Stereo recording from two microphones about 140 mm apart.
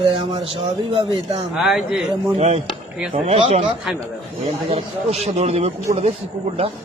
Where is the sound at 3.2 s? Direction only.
50° right (ahead or behind).